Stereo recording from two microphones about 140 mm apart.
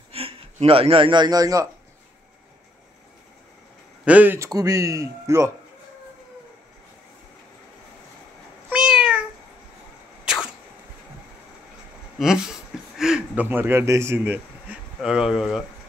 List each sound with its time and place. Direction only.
0.1 s speech: 45° right (ahead or behind); by 1.7 s 25° right (ahead or behind)
4.0 s speech: 10° right (ahead or behind)
4.5 s speech: 25° right (ahead or behind)
8.6 s cat: 5° right (ahead or behind)
10.2 s a sound: 5° right (ahead or behind)
12.2 s speech: 5° right (ahead or behind)